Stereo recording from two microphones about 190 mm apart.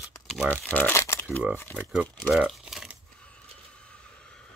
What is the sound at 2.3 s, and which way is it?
Crumpling, centre (ahead or behind).